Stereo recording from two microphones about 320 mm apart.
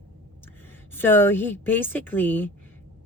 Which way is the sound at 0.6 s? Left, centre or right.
Centre.